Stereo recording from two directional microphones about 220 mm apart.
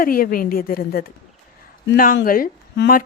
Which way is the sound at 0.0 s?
40° left (ahead or behind).